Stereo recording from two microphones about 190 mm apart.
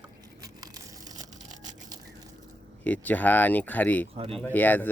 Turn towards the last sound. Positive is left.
turn(degrees=10)  # may be behind; listen again after turning